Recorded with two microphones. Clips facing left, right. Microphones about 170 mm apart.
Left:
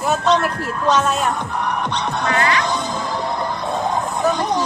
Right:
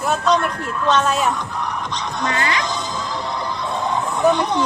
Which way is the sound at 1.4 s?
60° left (ahead or behind).